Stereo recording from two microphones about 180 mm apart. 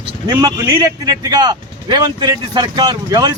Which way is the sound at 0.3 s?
20° right (ahead or behind).